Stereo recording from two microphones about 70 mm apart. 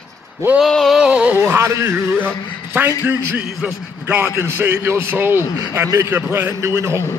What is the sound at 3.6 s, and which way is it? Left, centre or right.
Speech, right.